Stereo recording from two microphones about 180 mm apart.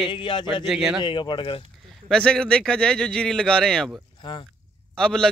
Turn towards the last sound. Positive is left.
turn(degrees=5)  # may be behind; listen again after turning